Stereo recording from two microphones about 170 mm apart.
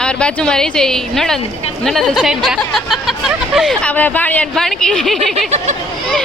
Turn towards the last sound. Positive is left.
turn(degrees=0)  # may be behind; listen again after turning